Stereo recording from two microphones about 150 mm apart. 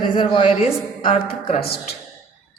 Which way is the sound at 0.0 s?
35° left (ahead or behind).